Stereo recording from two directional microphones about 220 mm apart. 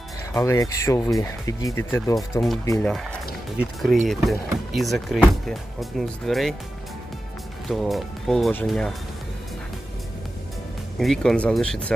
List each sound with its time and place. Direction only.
0.3 s speech: 15° left (ahead or behind)
3.6 s speech: centre (ahead or behind)
7.7 s speech: centre (ahead or behind)
10.9 s speech: centre (ahead or behind)